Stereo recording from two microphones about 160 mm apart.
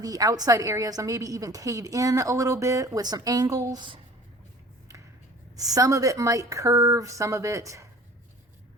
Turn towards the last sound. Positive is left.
turn(degrees=-20)  # may be behind; listen again after turning